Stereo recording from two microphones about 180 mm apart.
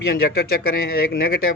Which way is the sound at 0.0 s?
65° left (ahead or behind).